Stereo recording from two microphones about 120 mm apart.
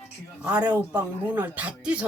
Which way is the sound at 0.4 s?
10° right (ahead or behind).